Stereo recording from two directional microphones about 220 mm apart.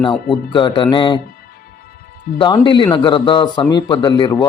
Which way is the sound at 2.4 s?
20° left (ahead or behind).